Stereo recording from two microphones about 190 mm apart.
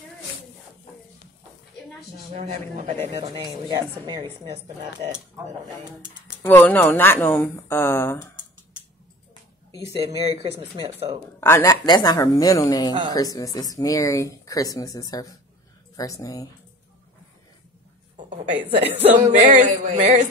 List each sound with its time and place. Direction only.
2.3 s music: 35° right (ahead or behind)
3.4 s a woman's voice: 20° right (ahead or behind)
6.4 s speech: 10° left (ahead or behind)
9.9 s music: 35° right (ahead or behind)
11.3 s a woman's voice: 15° left (ahead or behind)
18.1 s a sound: 40° right (ahead or behind)
19.1 s music: 40° right (ahead or behind)